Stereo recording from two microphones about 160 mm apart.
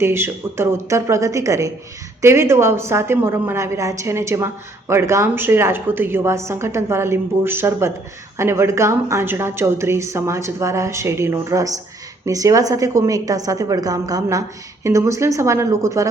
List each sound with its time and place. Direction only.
0.0 s a woman's voice: 15° right (ahead or behind)